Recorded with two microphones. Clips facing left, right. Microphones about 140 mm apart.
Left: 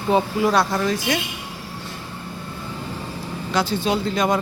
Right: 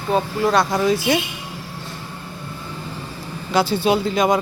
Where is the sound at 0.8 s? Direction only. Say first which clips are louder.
Right 4 dB; 10° right (ahead or behind).